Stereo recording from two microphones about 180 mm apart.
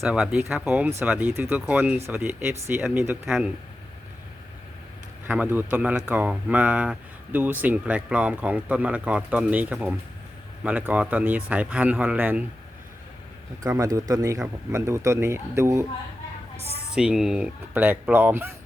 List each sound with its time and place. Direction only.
0.0 s speech: 5° right (ahead or behind)
5.3 s speech: 10° right (ahead or behind)
13.7 s speech: 20° right (ahead or behind)
16.9 s speech: 5° right (ahead or behind)